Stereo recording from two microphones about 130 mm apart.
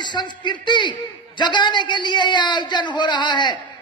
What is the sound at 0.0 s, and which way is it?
A man's voice, 35° left (ahead or behind).